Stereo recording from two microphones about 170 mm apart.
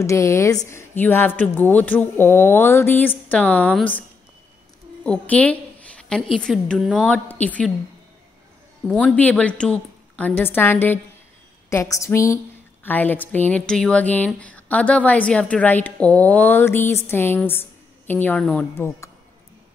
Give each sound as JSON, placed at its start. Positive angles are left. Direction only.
{"t": 0.0, "sound": "speech", "side_deg": 15}
{"t": 5.0, "sound": "a sound", "side_deg": 10}
{"t": 6.3, "sound": "a woman's voice", "side_deg": 5}
{"t": 8.8, "sound": "speech", "side_deg": 5}